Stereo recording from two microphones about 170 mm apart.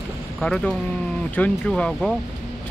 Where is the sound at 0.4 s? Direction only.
5° left (ahead or behind).